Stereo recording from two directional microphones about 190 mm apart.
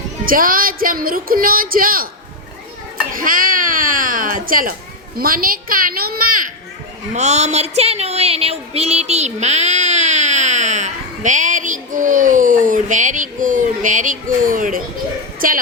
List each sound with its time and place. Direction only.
0.3 s speech: 50° right (ahead or behind)
3.2 s a sound: 45° right (ahead or behind)
5.1 s speech: 50° right (ahead or behind)
7.1 s a woman's voice: 35° right (ahead or behind)